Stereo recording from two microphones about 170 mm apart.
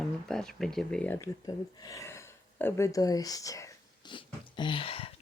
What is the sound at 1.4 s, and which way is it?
Speech, 20° left (ahead or behind).